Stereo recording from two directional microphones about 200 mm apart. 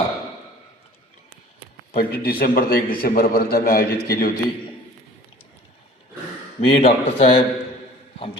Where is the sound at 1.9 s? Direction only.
50° left (ahead or behind).